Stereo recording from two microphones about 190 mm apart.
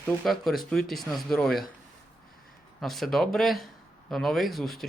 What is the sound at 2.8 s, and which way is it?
Speech, centre (ahead or behind).